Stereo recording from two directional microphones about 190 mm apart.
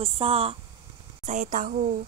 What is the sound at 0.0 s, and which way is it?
A woman's voice, 30° right (ahead or behind).